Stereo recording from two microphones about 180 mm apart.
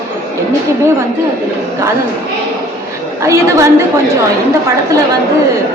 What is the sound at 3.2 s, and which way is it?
Speech, 15° right (ahead or behind).